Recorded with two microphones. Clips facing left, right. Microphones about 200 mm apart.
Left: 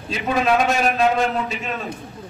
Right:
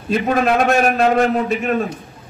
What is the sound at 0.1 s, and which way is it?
A man's voice, 50° right (ahead or behind).